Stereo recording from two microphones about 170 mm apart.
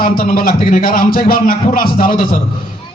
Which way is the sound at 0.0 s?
55° left (ahead or behind).